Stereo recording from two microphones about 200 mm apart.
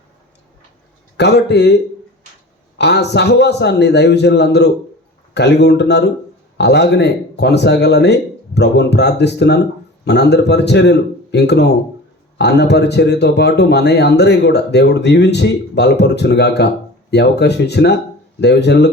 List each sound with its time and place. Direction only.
1.1 s speech: 60° left (ahead or behind)
2.7 s speech: 55° left (ahead or behind)